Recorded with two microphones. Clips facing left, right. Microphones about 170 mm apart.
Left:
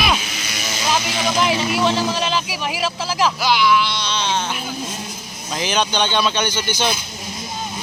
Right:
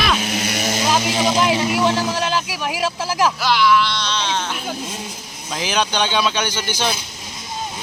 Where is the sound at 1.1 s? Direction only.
30° right (ahead or behind).